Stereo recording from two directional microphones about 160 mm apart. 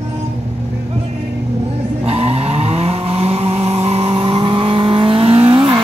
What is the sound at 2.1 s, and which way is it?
Vehicle, 40° right (ahead or behind).